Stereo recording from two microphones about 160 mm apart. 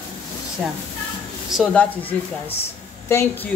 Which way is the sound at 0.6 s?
5° right (ahead or behind).